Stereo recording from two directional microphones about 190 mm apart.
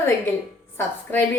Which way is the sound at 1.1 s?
10° left (ahead or behind).